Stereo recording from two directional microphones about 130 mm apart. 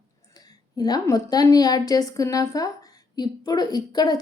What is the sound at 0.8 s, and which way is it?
A woman's voice, 30° left (ahead or behind).